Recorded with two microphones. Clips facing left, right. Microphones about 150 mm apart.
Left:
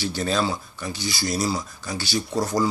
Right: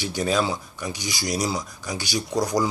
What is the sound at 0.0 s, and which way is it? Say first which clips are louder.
Speech: right 1 dB; 15° right (ahead or behind).